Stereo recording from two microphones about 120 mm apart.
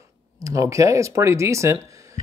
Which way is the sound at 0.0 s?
25° right (ahead or behind).